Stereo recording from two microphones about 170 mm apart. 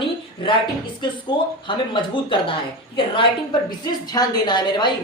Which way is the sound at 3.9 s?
25° left (ahead or behind).